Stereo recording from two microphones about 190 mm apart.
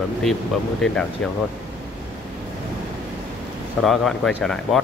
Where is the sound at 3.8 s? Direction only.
Centre (ahead or behind).